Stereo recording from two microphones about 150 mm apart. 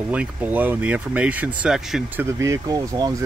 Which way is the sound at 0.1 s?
10° right (ahead or behind).